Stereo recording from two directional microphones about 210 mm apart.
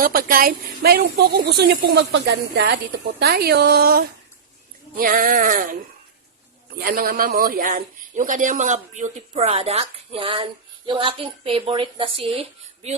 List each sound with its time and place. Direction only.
0.0 s a woman's voice: 45° right (ahead or behind)
6.7 s a woman's voice: 45° right (ahead or behind); by 12.9 s 25° right (ahead or behind)